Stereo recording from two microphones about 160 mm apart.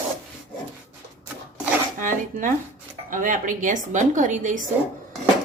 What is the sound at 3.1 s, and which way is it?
A woman's voice, 55° right (ahead or behind).